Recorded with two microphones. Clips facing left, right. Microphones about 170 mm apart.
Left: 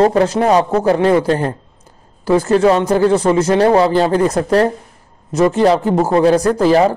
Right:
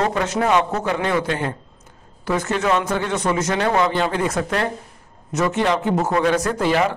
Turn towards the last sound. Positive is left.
turn(degrees=35)  # may be behind; listen again after turning